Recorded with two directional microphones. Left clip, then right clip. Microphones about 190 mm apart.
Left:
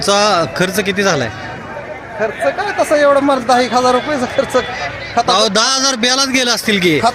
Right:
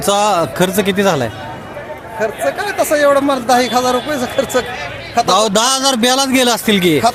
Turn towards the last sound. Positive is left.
turn(degrees=-15)  # may be behind; listen again after turning